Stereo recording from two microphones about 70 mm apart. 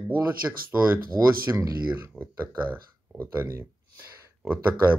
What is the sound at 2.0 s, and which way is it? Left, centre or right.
Speech, right.